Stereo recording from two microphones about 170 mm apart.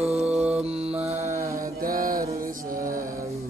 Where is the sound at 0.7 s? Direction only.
35° right (ahead or behind).